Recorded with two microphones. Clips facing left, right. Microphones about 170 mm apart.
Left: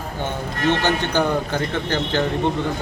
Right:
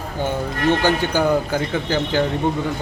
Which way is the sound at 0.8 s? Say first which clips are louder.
Right 2 dB; 10° right (ahead or behind).